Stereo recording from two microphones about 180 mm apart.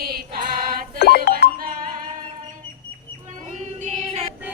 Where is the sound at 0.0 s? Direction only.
60° right (ahead or behind).